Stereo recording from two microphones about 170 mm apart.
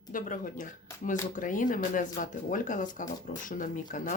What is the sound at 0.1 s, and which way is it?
Speech, 50° left (ahead or behind).